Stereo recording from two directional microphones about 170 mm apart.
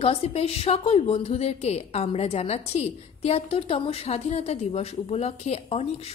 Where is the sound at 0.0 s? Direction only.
35° left (ahead or behind).